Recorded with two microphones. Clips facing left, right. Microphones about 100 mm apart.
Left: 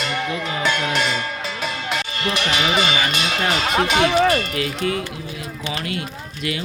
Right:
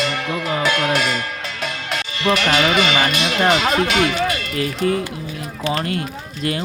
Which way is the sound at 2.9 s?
45° right (ahead or behind).